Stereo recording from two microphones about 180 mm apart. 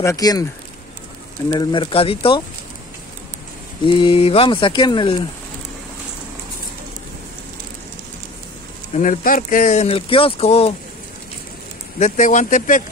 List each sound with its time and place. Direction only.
0.0 s speech: 20° left (ahead or behind)
1.5 s speech: 25° left (ahead or behind)
3.8 s speech: 30° left (ahead or behind)
8.9 s speech: 45° left (ahead or behind)
12.0 s speech: 45° left (ahead or behind)